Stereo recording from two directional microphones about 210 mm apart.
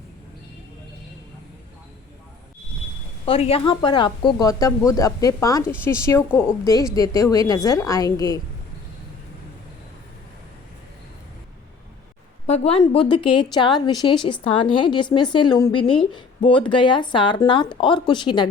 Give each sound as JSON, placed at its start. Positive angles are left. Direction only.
{"t": 3.2, "sound": "a woman's voice", "side_deg": 25}
{"t": 12.5, "sound": "a woman's voice", "side_deg": 30}